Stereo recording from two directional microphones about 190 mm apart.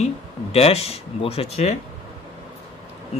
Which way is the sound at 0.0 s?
30° left (ahead or behind).